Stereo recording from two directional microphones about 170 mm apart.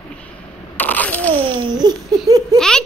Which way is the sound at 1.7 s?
25° right (ahead or behind).